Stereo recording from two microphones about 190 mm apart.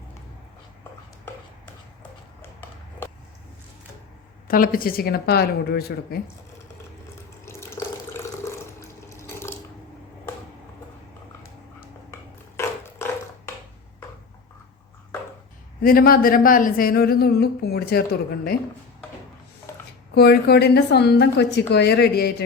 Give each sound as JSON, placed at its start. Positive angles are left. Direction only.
{"t": 2.4, "sound": "a sound", "side_deg": 10}
{"t": 4.4, "sound": "speech", "side_deg": 45}
{"t": 7.4, "sound": "water", "side_deg": 15}
{"t": 12.5, "sound": "a sound", "side_deg": 15}
{"t": 15.8, "sound": "speech", "side_deg": 50}
{"t": 20.1, "sound": "a woman's voice", "side_deg": 60}